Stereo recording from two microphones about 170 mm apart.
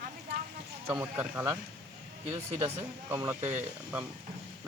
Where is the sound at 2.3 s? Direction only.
35° right (ahead or behind).